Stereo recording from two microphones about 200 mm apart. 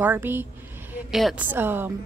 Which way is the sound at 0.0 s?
10° right (ahead or behind).